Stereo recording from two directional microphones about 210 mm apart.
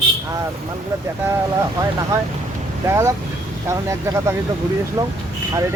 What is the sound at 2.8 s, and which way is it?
Speech, 15° right (ahead or behind).